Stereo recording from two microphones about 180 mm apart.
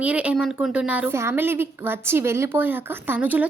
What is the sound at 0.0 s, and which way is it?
A woman's voice, 5° right (ahead or behind).